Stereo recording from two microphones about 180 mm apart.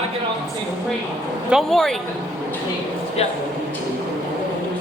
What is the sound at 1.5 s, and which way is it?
Speech, centre (ahead or behind).